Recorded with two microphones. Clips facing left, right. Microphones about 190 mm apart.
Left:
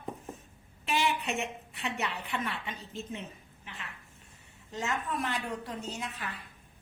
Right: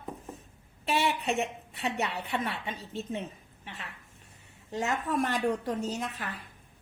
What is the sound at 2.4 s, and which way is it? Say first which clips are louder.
Speech: right 2 dB; 30° right (ahead or behind).